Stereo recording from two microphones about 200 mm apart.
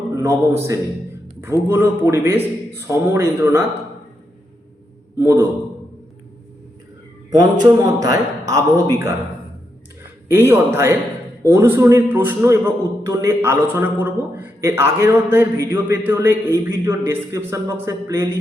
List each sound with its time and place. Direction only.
0.2 s a man's voice: 15° right (ahead or behind)
5.2 s a man's voice: 15° right (ahead or behind)
7.6 s a man's voice: 20° right (ahead or behind)
10.2 s a man's voice: 10° right (ahead or behind)